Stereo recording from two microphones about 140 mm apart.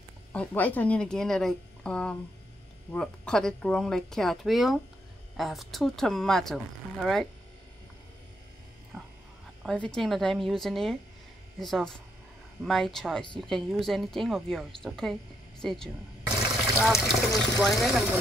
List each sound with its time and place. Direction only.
0.3 s speech: 10° left (ahead or behind)
8.9 s dog: 5° right (ahead or behind)
9.6 s speech: 5° left (ahead or behind)